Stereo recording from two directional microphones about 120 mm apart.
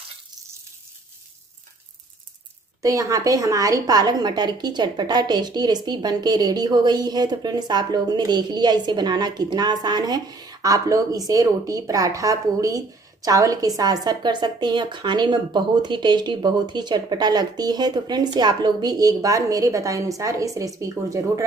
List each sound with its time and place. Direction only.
2.8 s a woman's voice: 30° right (ahead or behind)